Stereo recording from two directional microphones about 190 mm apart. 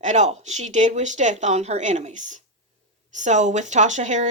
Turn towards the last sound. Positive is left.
turn(degrees=-40)  # may be behind; listen again after turning